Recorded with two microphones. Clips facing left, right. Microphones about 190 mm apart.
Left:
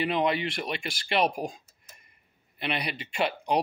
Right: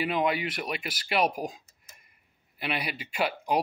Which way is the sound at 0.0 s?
5° right (ahead or behind).